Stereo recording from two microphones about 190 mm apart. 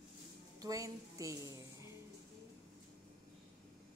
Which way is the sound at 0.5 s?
20° right (ahead or behind).